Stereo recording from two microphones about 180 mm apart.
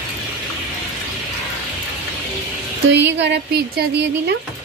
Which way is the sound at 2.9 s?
75° right (ahead or behind).